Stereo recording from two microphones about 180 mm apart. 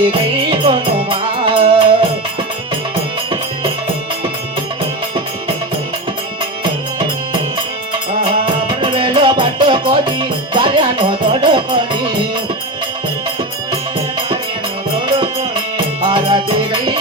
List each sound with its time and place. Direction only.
0.0 s music: 30° right (ahead or behind)
8.2 s music: 30° right (ahead or behind)
15.0 s music: 25° right (ahead or behind)